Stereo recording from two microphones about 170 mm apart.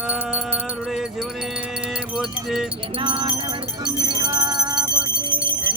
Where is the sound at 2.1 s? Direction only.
Centre (ahead or behind).